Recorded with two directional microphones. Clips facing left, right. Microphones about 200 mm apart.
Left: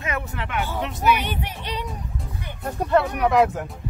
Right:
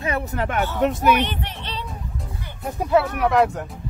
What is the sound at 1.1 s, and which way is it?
Speech, 10° left (ahead or behind).